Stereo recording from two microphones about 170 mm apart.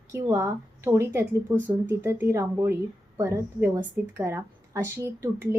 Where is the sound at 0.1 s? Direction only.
15° right (ahead or behind).